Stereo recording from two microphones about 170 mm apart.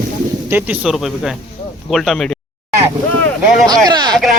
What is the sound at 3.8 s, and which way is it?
Speech, 25° right (ahead or behind).